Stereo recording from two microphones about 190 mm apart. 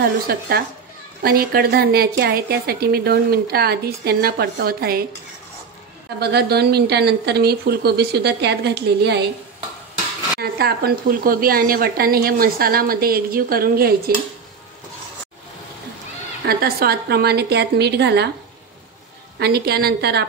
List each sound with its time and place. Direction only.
0.0 s a woman's voice: 50° right (ahead or behind)
6.1 s speech: 60° right (ahead or behind)
10.4 s a woman's voice: 55° right (ahead or behind)
16.4 s speech: 55° right (ahead or behind)
19.3 s speech: 55° right (ahead or behind)